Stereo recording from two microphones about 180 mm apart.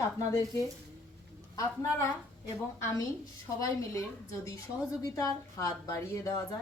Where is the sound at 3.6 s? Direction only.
20° left (ahead or behind).